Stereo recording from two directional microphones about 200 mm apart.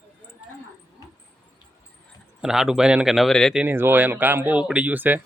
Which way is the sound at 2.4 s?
Centre (ahead or behind).